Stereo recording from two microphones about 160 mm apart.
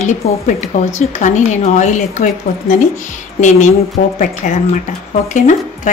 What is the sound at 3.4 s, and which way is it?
Speech, 50° left (ahead or behind).